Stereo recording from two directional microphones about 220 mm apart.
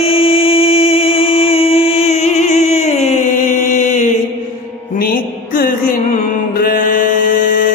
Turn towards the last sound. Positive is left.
turn(degrees=40)  # may be behind; listen again after turning